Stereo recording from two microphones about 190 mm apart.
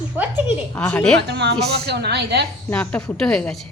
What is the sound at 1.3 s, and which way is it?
A woman's voice, 65° right (ahead or behind).